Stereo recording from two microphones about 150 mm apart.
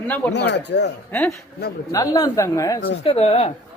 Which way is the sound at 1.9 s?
25° left (ahead or behind).